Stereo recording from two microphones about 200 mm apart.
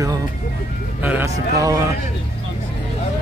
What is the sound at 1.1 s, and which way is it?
Speech, 15° right (ahead or behind).